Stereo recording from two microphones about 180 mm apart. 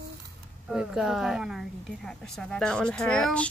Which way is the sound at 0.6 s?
5° right (ahead or behind).